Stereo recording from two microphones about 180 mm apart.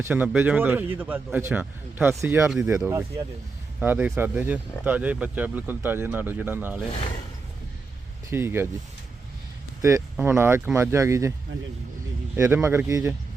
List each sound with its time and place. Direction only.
0.0 s speech: 10° right (ahead or behind)
8.3 s speech: 15° right (ahead or behind)
9.8 s speech: 15° right (ahead or behind)
12.4 s speech: 15° right (ahead or behind)